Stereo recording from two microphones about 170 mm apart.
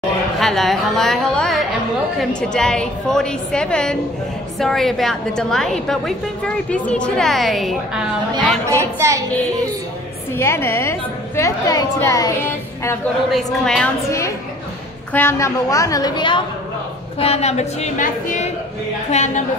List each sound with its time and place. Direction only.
0.4 s a woman's voice: centre (ahead or behind)
8.6 s speech: 15° right (ahead or behind)
10.3 s a woman's voice: 15° left (ahead or behind)
13.3 s a woman's voice: centre (ahead or behind)
14.0 s a woman's voice: 20° left (ahead or behind)
17.2 s a woman's voice: 40° left (ahead or behind)